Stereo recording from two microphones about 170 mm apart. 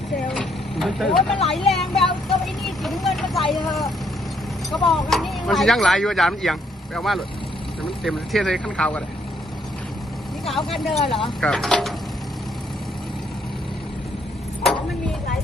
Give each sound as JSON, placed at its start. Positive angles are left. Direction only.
{"t": 0.3, "sound": "vehicle", "side_deg": 5}
{"t": 3.5, "sound": "speech", "side_deg": 0}
{"t": 10.9, "sound": "speech", "side_deg": 30}
{"t": 11.3, "sound": "speech", "side_deg": 5}
{"t": 14.6, "sound": "vehicle", "side_deg": 0}